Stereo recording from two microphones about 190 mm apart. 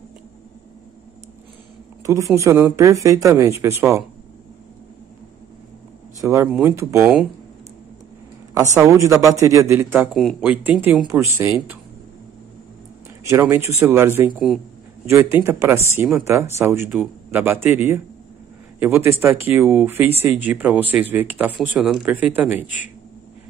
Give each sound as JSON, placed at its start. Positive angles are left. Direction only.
{"t": 2.0, "sound": "speech", "side_deg": -15}
{"t": 6.2, "sound": "speech", "side_deg": -15}
{"t": 8.7, "sound": "speech", "side_deg": -15}
{"t": 13.2, "sound": "speech", "side_deg": -15}